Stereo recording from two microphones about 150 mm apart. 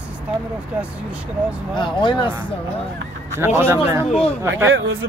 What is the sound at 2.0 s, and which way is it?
Speech, 30° left (ahead or behind).